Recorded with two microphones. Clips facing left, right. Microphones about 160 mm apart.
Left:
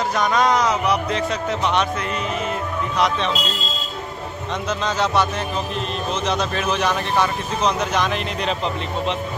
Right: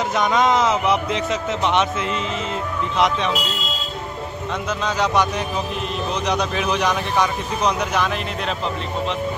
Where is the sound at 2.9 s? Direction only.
20° right (ahead or behind).